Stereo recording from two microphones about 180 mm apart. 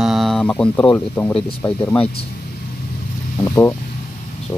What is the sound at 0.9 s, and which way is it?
Speech, 10° left (ahead or behind).